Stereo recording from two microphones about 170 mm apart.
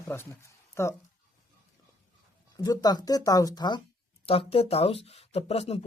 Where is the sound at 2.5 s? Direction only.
20° left (ahead or behind); by 5.8 s 40° left (ahead or behind).